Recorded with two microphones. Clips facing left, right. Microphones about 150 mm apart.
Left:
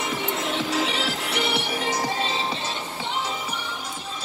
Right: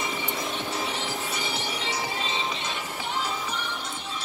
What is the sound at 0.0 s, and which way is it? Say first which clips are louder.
Music: left 4 dB; 75° left (ahead or behind).